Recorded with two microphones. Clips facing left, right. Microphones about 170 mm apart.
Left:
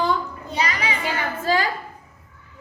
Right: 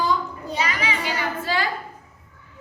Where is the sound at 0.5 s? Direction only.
35° left (ahead or behind).